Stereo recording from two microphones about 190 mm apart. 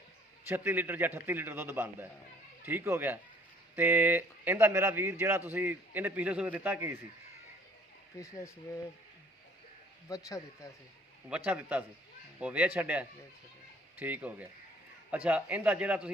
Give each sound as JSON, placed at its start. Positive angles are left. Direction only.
{"t": 0.4, "sound": "a man's voice", "side_deg": -10}
{"t": 8.2, "sound": "speech", "side_deg": 15}
{"t": 10.1, "sound": "speech", "side_deg": 15}
{"t": 11.3, "sound": "a man's voice", "side_deg": -5}